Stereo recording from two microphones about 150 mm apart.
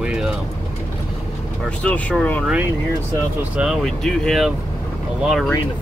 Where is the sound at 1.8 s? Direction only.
10° left (ahead or behind).